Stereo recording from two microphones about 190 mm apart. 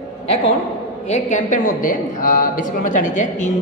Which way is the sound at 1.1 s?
40° left (ahead or behind).